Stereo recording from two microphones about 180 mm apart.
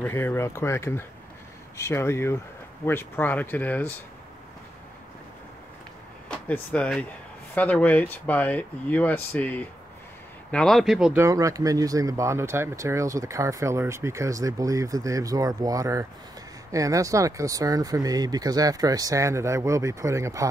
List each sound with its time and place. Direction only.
0.0 s speech: 10° left (ahead or behind)
6.2 s speech: 5° left (ahead or behind)
11.2 s speech: 20° right (ahead or behind)